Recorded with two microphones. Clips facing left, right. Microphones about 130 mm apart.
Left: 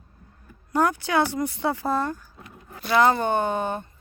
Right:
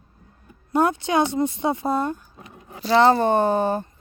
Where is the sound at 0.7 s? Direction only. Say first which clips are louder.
Right 2 dB; 20° right (ahead or behind).